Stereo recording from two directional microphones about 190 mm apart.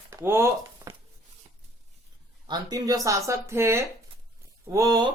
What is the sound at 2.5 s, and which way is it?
Speech, 20° right (ahead or behind).